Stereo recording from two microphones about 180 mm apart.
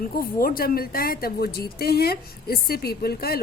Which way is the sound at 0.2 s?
55° left (ahead or behind).